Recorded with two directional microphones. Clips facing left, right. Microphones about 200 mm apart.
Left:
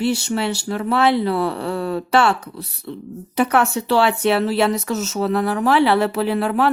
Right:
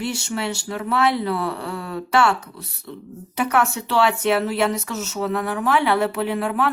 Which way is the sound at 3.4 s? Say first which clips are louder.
Left 3 dB; 35° left (ahead or behind).